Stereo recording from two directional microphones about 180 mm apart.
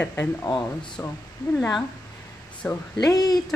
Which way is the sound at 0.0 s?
10° left (ahead or behind).